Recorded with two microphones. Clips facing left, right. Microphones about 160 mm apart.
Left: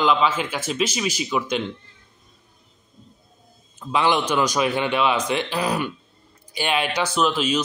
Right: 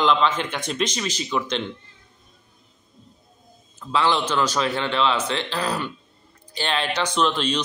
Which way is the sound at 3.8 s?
15° left (ahead or behind).